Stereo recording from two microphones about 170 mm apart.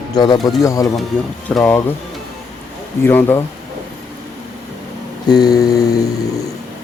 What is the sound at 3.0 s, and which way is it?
Speech, 15° left (ahead or behind).